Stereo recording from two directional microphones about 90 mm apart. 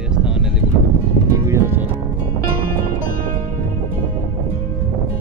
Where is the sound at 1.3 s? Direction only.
35° right (ahead or behind).